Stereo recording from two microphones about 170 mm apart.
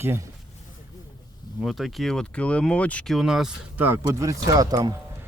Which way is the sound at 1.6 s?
Centre (ahead or behind).